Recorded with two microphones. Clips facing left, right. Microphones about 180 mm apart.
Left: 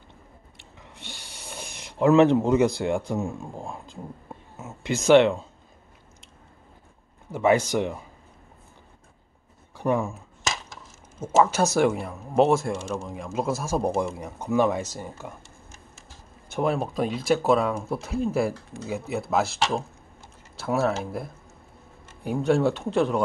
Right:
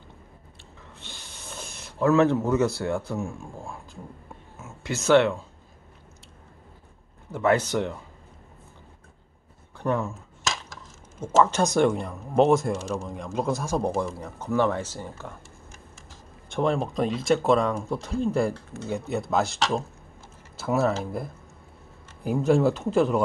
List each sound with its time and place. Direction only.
0.6 s a sound: 15° left (ahead or behind)
4.6 s speech: 20° left (ahead or behind)
7.2 s speech: 10° left (ahead or behind)
9.8 s dishes: 10° left (ahead or behind)
11.1 s speech: 5° left (ahead or behind)
13.9 s speech: 25° left (ahead or behind)
14.2 s speech: 10° left (ahead or behind)
16.4 s speech: 5° left (ahead or behind)